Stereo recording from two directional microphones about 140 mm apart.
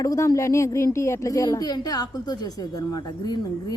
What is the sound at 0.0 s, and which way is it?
A woman's voice, 25° left (ahead or behind).